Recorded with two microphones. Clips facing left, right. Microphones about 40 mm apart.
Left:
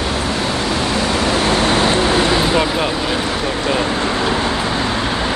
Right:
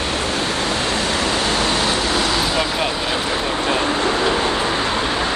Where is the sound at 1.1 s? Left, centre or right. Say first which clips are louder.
Left 3 dB; left.